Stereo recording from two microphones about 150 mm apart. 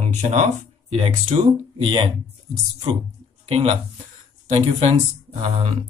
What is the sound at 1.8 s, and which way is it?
Speech, 35° right (ahead or behind).